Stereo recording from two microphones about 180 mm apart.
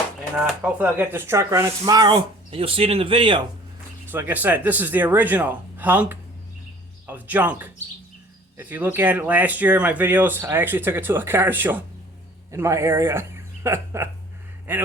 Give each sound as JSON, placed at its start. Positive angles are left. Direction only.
{"t": 0.3, "sound": "speech", "side_deg": -5}
{"t": 4.0, "sound": "speech", "side_deg": -10}